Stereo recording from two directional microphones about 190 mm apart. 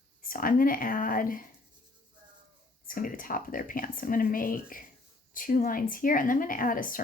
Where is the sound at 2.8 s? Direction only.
45° left (ahead or behind).